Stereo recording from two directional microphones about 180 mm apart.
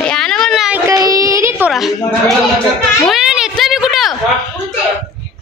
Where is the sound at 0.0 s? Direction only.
5° left (ahead or behind).